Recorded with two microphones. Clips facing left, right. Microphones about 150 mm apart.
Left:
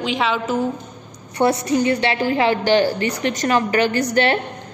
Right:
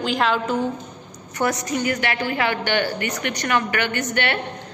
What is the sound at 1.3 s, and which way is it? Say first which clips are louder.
A woman's voice: left 6 dB; 30° left (ahead or behind).